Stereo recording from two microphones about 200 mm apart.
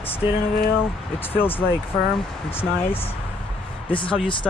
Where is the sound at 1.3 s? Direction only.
10° left (ahead or behind).